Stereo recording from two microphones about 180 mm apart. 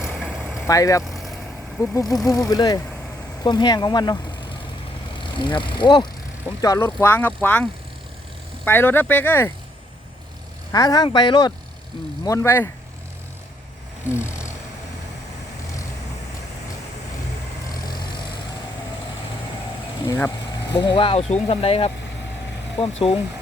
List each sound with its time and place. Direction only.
0.1 s vehicle: centre (ahead or behind)
0.7 s speech: 20° left (ahead or behind)
1.0 s vehicle: centre (ahead or behind)
1.8 s speech: 15° left (ahead or behind)
10.7 s speech: 20° left (ahead or behind)
14.1 s a sound: 15° left (ahead or behind)
20.0 s speech: 20° left (ahead or behind)